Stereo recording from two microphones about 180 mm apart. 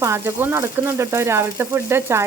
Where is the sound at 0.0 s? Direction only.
15° right (ahead or behind).